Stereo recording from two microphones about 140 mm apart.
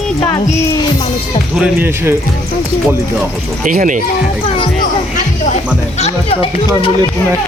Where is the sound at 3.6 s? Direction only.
70° right (ahead or behind).